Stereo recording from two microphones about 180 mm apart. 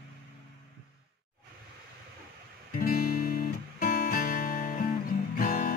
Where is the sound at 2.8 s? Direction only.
55° left (ahead or behind).